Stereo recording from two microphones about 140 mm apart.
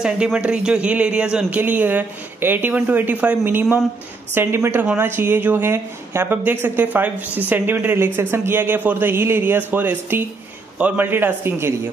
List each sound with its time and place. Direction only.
0.0 s speech: 10° right (ahead or behind)